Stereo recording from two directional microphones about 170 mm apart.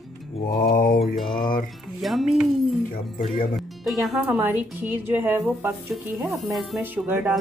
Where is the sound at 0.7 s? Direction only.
55° left (ahead or behind).